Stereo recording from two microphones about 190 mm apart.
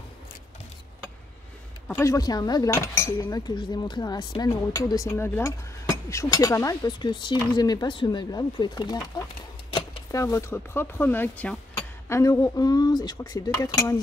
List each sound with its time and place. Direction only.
1.9 s speech: 15° left (ahead or behind)
9.7 s a sound: 25° left (ahead or behind)
10.2 s speech: 15° left (ahead or behind)